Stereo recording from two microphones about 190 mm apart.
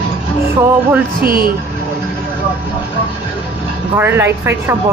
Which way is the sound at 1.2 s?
50° right (ahead or behind).